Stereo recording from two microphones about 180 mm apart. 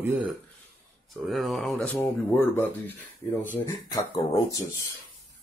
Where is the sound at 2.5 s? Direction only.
15° left (ahead or behind).